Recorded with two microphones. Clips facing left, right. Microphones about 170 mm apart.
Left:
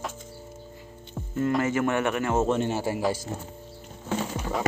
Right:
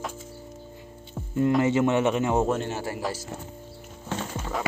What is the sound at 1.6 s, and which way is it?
Speech, 20° right (ahead or behind).